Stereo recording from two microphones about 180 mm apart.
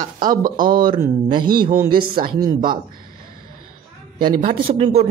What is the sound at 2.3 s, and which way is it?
Speech, 20° right (ahead or behind).